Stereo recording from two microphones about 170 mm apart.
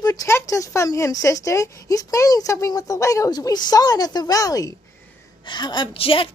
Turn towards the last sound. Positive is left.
turn(degrees=30)  # may be behind; listen again after turning